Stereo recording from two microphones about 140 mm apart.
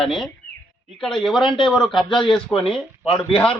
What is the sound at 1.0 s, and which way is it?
A man's voice, centre (ahead or behind).